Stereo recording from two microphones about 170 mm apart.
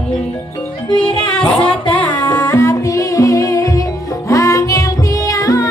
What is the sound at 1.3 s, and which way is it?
Music, 5° left (ahead or behind).